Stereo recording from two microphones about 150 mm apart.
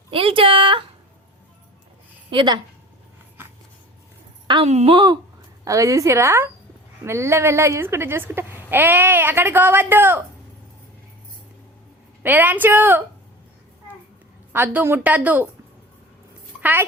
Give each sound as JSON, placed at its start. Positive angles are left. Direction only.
{"t": 0.1, "sound": "a sound", "side_deg": -35}
{"t": 2.3, "sound": "a woman's voice", "side_deg": -30}
{"t": 4.6, "sound": "a woman's voice", "side_deg": -45}
{"t": 5.6, "sound": "a woman's voice", "side_deg": -20}
{"t": 12.2, "sound": "speech", "side_deg": -10}
{"t": 14.5, "sound": "speech", "side_deg": -10}
{"t": 16.6, "sound": "speech", "side_deg": -10}